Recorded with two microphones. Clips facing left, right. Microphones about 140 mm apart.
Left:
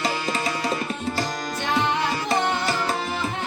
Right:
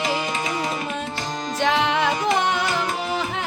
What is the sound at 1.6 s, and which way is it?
Music, 90° right.